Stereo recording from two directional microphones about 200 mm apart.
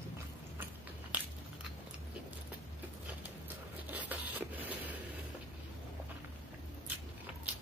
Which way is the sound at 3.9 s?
10° right (ahead or behind).